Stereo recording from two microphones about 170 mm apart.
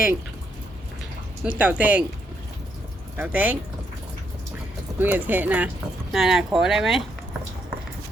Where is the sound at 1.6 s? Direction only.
10° right (ahead or behind).